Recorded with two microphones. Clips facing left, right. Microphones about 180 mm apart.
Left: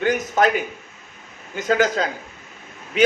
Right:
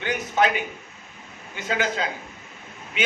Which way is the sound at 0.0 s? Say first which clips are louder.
Left 4 dB; 45° left (ahead or behind).